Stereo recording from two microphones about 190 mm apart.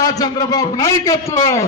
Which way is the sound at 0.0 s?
20° left (ahead or behind).